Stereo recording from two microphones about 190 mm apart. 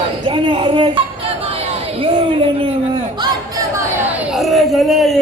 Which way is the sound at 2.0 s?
30° right (ahead or behind).